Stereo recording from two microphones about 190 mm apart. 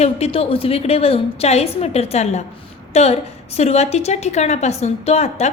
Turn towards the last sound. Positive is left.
turn(degrees=35)  # may be behind; listen again after turning